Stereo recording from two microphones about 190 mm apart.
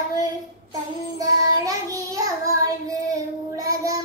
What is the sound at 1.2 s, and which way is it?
Child singing, 20° right (ahead or behind).